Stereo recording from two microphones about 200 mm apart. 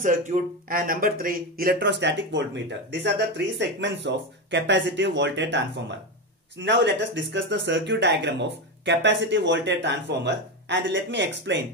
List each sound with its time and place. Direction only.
0.0 s speech: 40° right (ahead or behind); by 11.6 s 65° right (ahead or behind)